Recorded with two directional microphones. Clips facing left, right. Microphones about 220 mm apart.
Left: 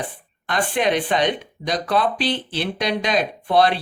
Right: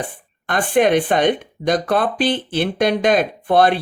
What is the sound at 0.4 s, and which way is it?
Speech, 50° right (ahead or behind).